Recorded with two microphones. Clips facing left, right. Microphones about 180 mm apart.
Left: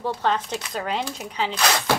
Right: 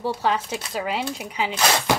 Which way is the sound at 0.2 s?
10° right (ahead or behind).